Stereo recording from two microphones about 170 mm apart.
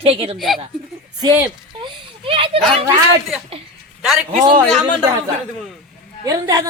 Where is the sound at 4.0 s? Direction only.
5° right (ahead or behind).